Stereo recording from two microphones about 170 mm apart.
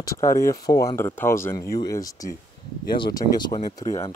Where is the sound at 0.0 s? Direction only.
20° left (ahead or behind).